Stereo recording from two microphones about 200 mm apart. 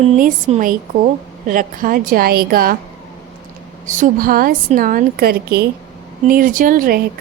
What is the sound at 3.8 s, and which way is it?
A woman's voice, 40° right (ahead or behind).